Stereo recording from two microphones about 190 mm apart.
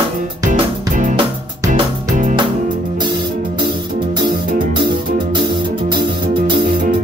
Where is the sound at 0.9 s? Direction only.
40° right (ahead or behind).